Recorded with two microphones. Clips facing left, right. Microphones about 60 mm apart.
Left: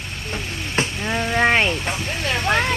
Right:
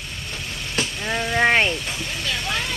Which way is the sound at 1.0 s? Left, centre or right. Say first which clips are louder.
Even; centre.